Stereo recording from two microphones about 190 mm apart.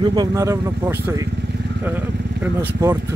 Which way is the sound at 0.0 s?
20° right (ahead or behind).